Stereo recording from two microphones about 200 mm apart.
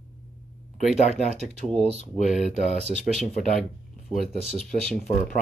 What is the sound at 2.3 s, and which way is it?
Speech, centre (ahead or behind).